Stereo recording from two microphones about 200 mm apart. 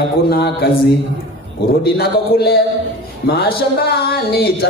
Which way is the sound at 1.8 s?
50° left (ahead or behind).